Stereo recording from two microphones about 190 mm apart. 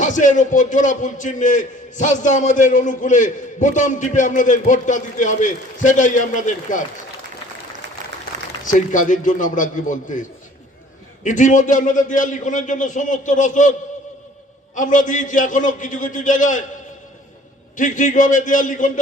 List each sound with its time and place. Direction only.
0.0 s a man's voice: 40° left (ahead or behind)
8.6 s a man's voice: 40° left (ahead or behind)
14.8 s a man's voice: 40° left (ahead or behind)
17.7 s a man's voice: 40° left (ahead or behind)